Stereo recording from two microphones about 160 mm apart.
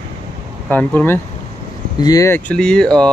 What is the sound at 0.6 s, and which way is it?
Speech, 10° left (ahead or behind).